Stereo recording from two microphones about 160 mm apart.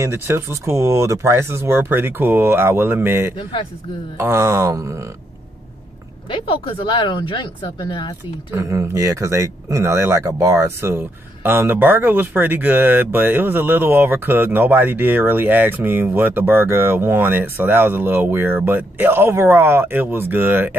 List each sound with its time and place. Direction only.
0.0 s speech: 15° right (ahead or behind)
6.3 s speech: 30° left (ahead or behind)
8.5 s speech: 20° right (ahead or behind)